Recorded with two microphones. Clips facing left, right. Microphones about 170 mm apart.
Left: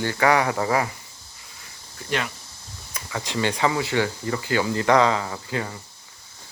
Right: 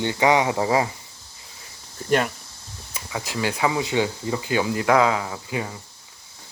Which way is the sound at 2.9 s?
5° right (ahead or behind).